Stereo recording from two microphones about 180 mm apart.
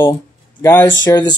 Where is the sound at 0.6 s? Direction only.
15° left (ahead or behind).